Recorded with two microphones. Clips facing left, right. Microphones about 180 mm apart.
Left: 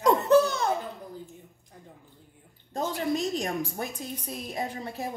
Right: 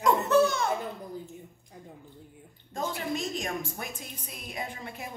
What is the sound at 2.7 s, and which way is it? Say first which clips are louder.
A woman's voice: left 4 dB; 35° left (ahead or behind).